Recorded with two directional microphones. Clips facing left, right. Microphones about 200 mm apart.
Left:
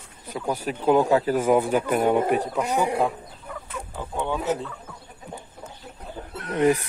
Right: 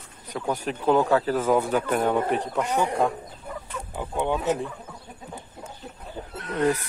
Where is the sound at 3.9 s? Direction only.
15° right (ahead or behind).